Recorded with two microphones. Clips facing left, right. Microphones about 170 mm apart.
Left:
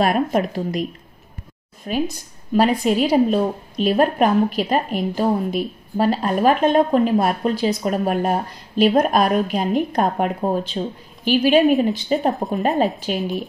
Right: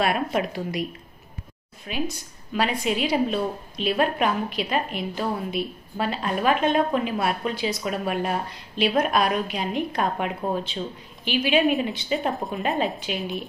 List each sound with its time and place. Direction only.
0.0 s a woman's voice: 45° left (ahead or behind)
1.9 s a woman's voice: 40° left (ahead or behind)